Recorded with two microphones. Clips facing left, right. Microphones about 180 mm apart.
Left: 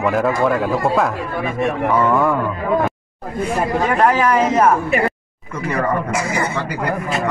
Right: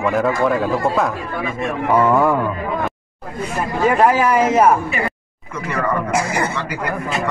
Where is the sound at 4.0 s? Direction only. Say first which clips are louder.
Even; 5° right (ahead or behind).